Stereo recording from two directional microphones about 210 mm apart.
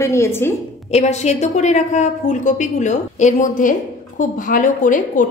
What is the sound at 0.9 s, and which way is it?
Speech, 30° left (ahead or behind).